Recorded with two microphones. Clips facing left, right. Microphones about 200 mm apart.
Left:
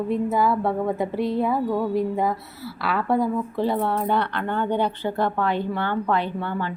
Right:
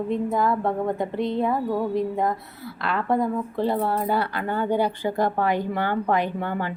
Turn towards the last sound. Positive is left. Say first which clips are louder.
# even
turn(degrees=-45)  # may be behind; listen again after turning